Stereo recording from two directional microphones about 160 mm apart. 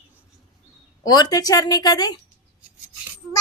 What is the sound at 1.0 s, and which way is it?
A child's voice, 25° left (ahead or behind).